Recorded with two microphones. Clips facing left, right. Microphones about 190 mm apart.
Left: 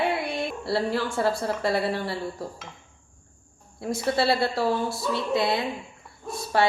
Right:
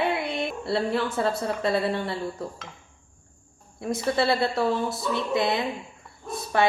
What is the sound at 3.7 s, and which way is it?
A woman's voice, 20° right (ahead or behind).